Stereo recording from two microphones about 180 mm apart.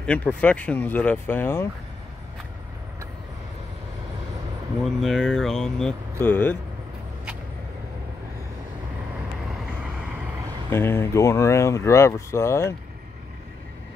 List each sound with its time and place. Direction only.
0.0 s speech: 5° left (ahead or behind)
4.8 s speech: centre (ahead or behind)
10.7 s speech: 10° left (ahead or behind)